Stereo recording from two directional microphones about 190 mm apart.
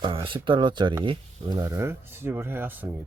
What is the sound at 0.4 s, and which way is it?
Speech, 25° right (ahead or behind).